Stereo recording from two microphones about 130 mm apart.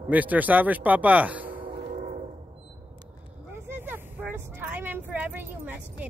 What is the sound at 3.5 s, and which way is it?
Vehicle, 15° right (ahead or behind).